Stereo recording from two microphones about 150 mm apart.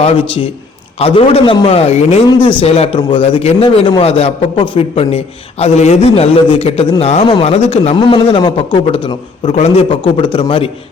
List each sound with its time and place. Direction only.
0.0 s a man's voice: 35° left (ahead or behind)